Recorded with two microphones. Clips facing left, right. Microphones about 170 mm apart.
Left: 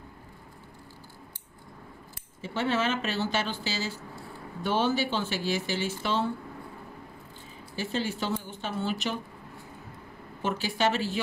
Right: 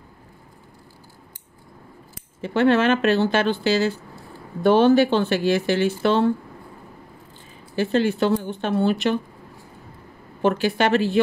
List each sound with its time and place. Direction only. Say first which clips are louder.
2.4 s speech: right 10 dB; 65° right (ahead or behind)
7.7 s speech: right 11 dB; 65° right (ahead or behind)
10.4 s speech: right 8 dB; 60° right (ahead or behind)